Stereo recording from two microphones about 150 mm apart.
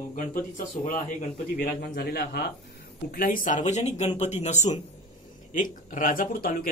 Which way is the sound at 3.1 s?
70° left (ahead or behind).